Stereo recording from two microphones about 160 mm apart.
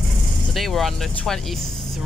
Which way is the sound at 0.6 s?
Centre (ahead or behind).